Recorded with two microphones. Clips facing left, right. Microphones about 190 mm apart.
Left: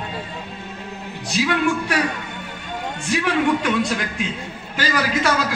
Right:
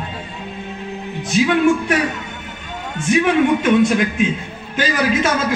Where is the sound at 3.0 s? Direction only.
20° right (ahead or behind).